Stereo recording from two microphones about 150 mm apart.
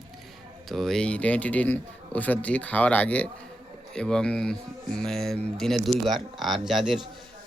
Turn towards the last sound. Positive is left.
turn(degrees=0)  # may be behind; listen again after turning